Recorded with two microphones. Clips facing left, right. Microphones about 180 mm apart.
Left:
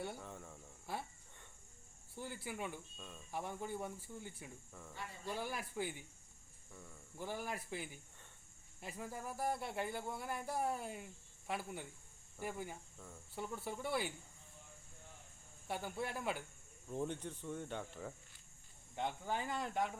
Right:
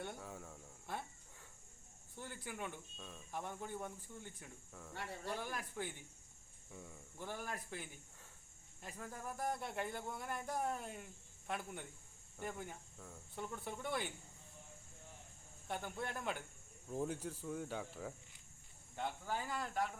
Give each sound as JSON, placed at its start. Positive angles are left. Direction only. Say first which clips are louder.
{"t": 0.0, "sound": "cricket", "louder": "left 1 dB", "side_deg": 0}
{"t": 2.1, "sound": "speech", "louder": "left 3 dB", "side_deg": 10}
{"t": 6.7, "sound": "speech", "louder": "right 3 dB", "side_deg": -10}
{"t": 7.2, "sound": "speech", "louder": "left 3 dB", "side_deg": 10}
{"t": 8.8, "sound": "cricket", "louder": "left 2 dB", "side_deg": 10}
{"t": 12.4, "sound": "speech", "louder": "left 2 dB", "side_deg": 5}
{"t": 15.6, "sound": "speech", "louder": "left 2 dB", "side_deg": 5}
{"t": 16.9, "sound": "cricket", "louder": "even", "side_deg": -5}
{"t": 18.9, "sound": "speech", "louder": "left 2 dB", "side_deg": 20}